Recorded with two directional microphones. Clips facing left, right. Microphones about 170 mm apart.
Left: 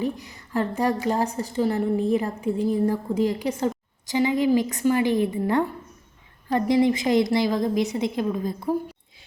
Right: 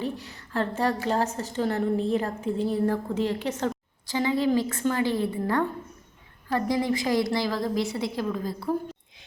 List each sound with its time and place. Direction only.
0.0 s a woman's voice: 10° left (ahead or behind)